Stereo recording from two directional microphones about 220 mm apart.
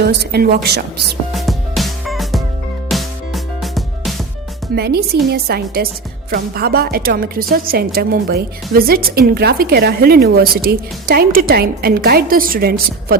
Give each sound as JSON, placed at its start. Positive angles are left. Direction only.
{"t": 0.0, "sound": "a woman's voice", "side_deg": -45}
{"t": 1.3, "sound": "music", "side_deg": 0}
{"t": 4.7, "sound": "a woman's voice", "side_deg": -45}